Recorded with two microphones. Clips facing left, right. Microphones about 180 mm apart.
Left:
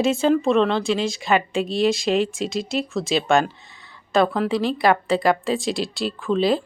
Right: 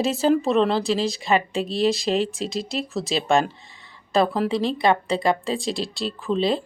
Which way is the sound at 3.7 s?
Centre (ahead or behind).